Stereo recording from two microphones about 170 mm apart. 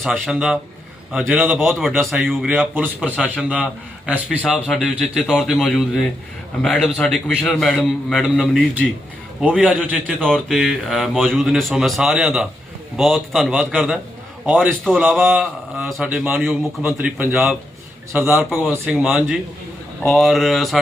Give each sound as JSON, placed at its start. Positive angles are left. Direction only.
{"t": 0.0, "sound": "a man's voice", "side_deg": -5}